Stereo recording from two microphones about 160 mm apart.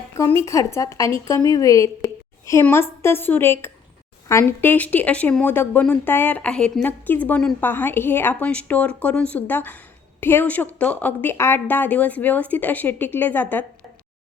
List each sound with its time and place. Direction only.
0.2 s a woman's voice: 20° left (ahead or behind)